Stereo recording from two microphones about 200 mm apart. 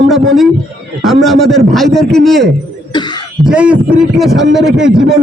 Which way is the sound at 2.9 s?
20° left (ahead or behind).